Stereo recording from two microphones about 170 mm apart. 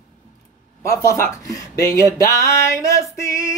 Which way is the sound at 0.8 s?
20° left (ahead or behind).